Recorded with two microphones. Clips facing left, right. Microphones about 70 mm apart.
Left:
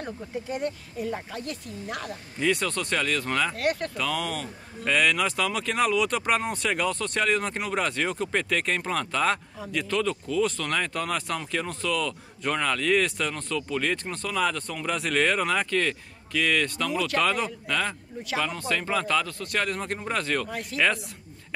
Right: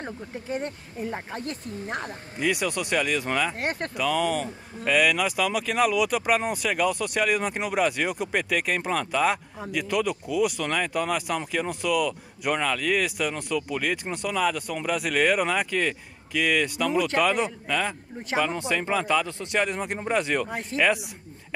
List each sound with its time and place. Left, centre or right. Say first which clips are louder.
0.0 s speech: left 2 dB; right
2.3 s speech: even; centre
3.5 s speech: left 2 dB; right
3.9 s speech: right 5 dB; centre